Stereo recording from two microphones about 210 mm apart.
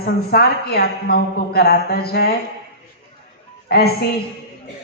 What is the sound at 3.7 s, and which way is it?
Speech, 50° left (ahead or behind).